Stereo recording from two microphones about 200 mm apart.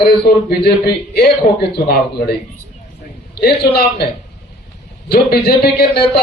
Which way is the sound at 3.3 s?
55° left (ahead or behind).